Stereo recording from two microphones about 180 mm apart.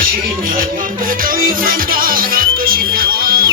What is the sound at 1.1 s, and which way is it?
Music, 50° right (ahead or behind).